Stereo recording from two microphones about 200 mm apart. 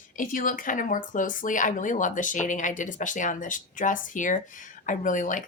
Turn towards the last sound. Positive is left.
turn(degrees=40)  # may be behind; listen again after turning